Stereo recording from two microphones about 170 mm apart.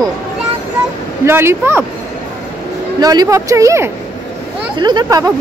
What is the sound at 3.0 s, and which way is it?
Speech, 20° right (ahead or behind).